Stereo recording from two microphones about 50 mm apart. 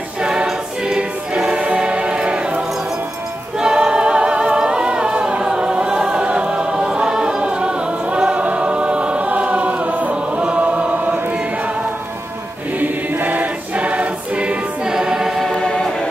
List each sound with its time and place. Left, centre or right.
0.2 s choir: centre
3.5 s a capella: centre
6.3 s choir: centre
10.1 s chant: right
12.7 s choir: right
14.9 s choir: centre
15.5 s music: centre